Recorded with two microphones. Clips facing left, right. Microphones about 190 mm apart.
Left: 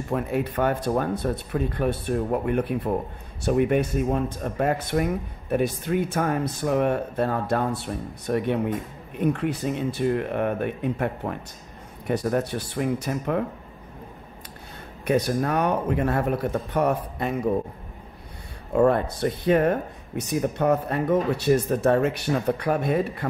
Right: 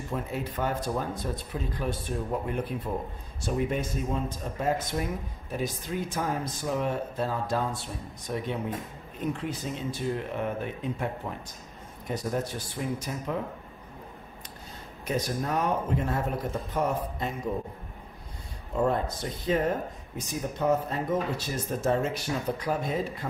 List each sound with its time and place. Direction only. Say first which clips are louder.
0.1 s speech: left 8 dB; 65° left (ahead or behind)
15.0 s speech: left 7 dB; 65° left (ahead or behind)
18.8 s speech: left 7 dB; 65° left (ahead or behind)